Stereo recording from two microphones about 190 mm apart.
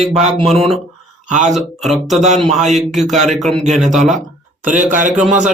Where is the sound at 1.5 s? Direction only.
Centre (ahead or behind).